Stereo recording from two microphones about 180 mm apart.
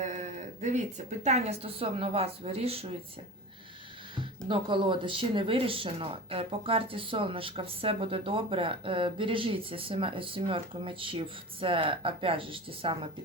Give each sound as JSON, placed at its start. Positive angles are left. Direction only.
{"t": 0.0, "sound": "a woman's voice", "side_deg": -40}
{"t": 4.2, "sound": "speech", "side_deg": -30}